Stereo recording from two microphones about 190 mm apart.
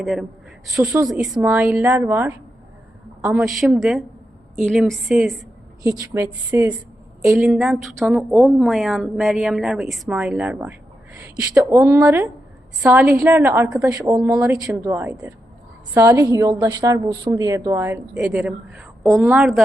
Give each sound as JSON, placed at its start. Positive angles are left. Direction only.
{"t": 0.0, "sound": "a woman's voice", "side_deg": 0}
{"t": 3.4, "sound": "a woman's voice", "side_deg": 0}
{"t": 5.8, "sound": "a woman's voice", "side_deg": -20}
{"t": 7.2, "sound": "a woman's voice", "side_deg": 0}
{"t": 11.6, "sound": "a woman's voice", "side_deg": -20}
{"t": 13.9, "sound": "a woman's voice", "side_deg": -15}